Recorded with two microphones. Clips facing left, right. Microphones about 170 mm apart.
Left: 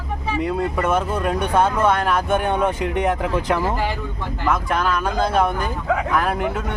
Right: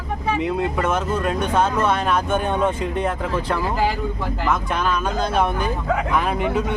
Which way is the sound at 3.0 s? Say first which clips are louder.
Left 4 dB; 15° left (ahead or behind).